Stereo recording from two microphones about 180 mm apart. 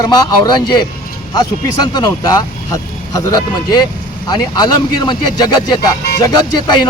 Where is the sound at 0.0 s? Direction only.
25° left (ahead or behind).